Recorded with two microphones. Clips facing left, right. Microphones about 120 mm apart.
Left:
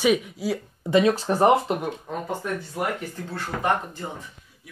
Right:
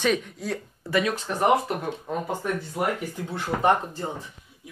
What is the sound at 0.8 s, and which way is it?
Speech, 25° left (ahead or behind).